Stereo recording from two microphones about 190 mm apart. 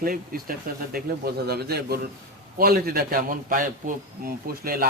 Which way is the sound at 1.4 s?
55° right (ahead or behind).